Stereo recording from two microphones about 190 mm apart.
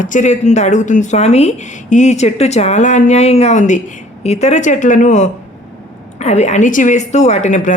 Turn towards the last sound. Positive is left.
turn(degrees=40)  # may be behind; listen again after turning